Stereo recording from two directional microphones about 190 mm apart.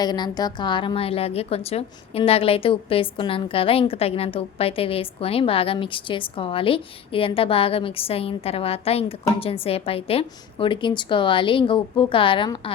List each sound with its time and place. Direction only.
0.0 s a woman's voice: 20° left (ahead or behind)